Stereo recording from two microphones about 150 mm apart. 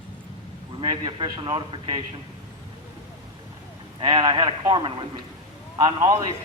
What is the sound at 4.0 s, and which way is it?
A man's voice, 30° right (ahead or behind).